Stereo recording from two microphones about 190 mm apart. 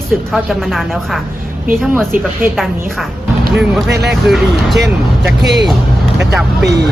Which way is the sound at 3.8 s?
60° right (ahead or behind).